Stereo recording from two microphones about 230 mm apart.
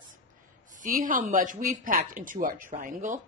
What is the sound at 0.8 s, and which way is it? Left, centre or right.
Speech, right.